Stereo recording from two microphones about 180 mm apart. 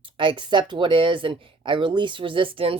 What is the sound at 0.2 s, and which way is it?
Speech, 25° right (ahead or behind).